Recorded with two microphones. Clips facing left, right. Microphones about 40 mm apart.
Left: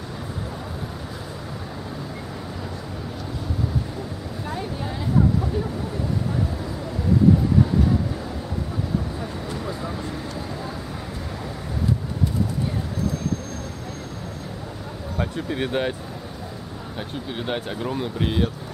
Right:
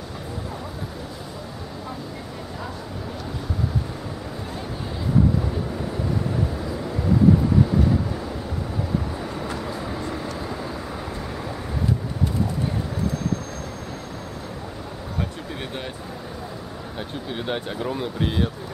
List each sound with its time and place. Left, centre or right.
15.1 s speech: left
17.3 s speech: centre